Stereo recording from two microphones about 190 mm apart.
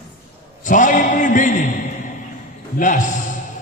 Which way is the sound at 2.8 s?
40° left (ahead or behind).